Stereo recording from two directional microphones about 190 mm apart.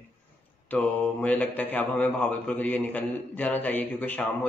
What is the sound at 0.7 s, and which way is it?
Speech, 10° left (ahead or behind).